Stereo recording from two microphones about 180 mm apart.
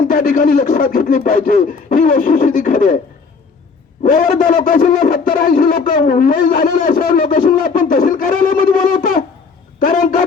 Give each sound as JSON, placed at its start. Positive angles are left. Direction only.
{"t": 0.1, "sound": "a man's voice", "side_deg": 50}
{"t": 4.0, "sound": "a man's voice", "side_deg": 50}